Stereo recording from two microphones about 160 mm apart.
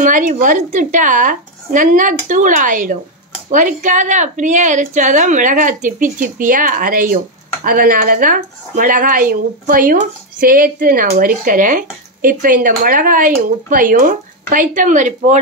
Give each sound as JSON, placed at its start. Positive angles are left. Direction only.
{"t": 0.0, "sound": "a woman's voice", "side_deg": -55}